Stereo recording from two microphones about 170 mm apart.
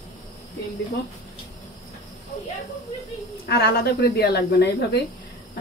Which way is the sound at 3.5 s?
75° left (ahead or behind).